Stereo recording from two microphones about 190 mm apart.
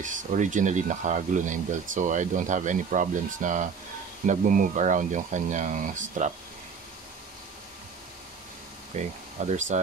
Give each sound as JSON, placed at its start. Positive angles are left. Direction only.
{"t": 0.0, "sound": "speech", "side_deg": -40}
{"t": 8.9, "sound": "speech", "side_deg": -35}